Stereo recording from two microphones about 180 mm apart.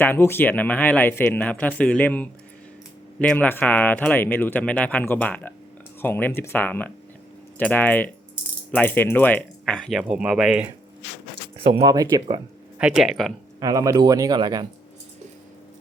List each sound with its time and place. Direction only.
0.0 s speech: 10° left (ahead or behind); by 10.7 s 5° right (ahead or behind)
11.6 s speech: 30° right (ahead or behind)
11.9 s speech: 20° right (ahead or behind)
12.8 s speech: 5° right (ahead or behind)
13.6 s speech: 20° right (ahead or behind)